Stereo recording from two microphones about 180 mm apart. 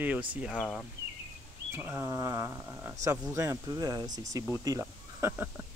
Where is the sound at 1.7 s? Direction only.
10° right (ahead or behind).